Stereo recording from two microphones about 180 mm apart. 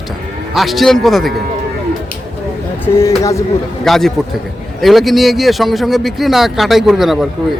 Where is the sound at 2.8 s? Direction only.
15° left (ahead or behind).